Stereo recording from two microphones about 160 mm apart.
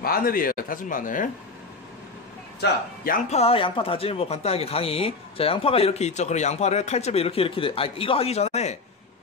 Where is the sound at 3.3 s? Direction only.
35° left (ahead or behind).